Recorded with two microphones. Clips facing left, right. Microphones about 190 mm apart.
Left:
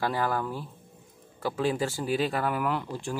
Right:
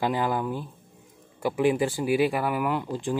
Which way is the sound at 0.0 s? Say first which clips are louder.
Right 2 dB; 15° right (ahead or behind).